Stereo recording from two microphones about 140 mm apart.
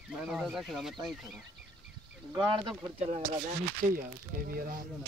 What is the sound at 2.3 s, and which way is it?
Speech, 30° right (ahead or behind).